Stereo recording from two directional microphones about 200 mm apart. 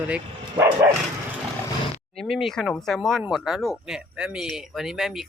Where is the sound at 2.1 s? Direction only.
Centre (ahead or behind).